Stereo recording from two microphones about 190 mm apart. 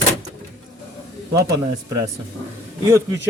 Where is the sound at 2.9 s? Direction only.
15° right (ahead or behind).